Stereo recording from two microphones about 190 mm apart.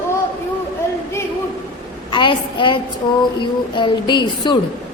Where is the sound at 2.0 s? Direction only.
25° left (ahead or behind).